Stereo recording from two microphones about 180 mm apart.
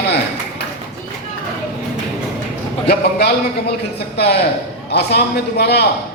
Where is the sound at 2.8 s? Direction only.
65° left (ahead or behind).